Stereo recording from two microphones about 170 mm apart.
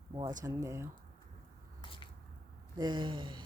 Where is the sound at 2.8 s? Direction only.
25° right (ahead or behind).